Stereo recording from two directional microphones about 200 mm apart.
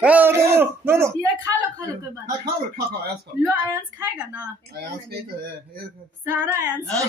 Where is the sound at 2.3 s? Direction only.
50° right (ahead or behind).